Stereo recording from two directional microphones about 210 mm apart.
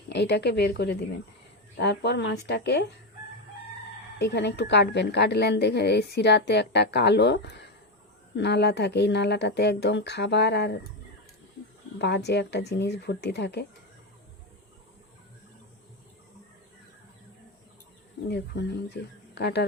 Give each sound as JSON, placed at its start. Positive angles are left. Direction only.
{"t": 0.1, "sound": "a woman's voice", "side_deg": 55}
{"t": 4.2, "sound": "a woman's voice", "side_deg": 55}
{"t": 11.9, "sound": "a woman's voice", "side_deg": 55}
{"t": 18.3, "sound": "a woman's voice", "side_deg": 50}